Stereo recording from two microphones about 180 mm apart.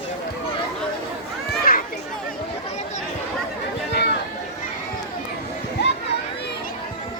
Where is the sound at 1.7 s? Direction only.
55° left (ahead or behind).